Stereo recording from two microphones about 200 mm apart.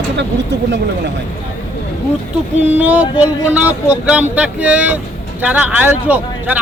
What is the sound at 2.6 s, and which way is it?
Speech, 5° right (ahead or behind).